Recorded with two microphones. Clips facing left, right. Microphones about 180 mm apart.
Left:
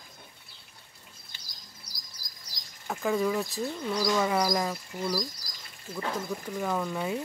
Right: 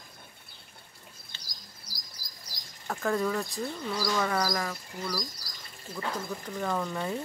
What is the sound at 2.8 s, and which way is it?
Speech, 5° left (ahead or behind).